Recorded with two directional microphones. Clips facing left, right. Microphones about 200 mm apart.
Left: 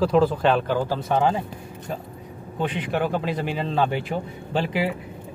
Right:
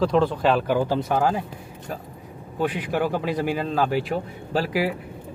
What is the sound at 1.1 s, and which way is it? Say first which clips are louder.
Speech: left 2 dB; 5° right (ahead or behind).